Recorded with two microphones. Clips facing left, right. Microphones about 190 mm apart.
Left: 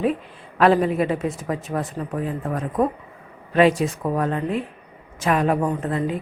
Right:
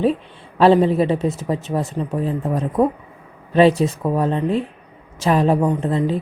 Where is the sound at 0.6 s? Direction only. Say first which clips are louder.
Right 4 dB; 30° right (ahead or behind).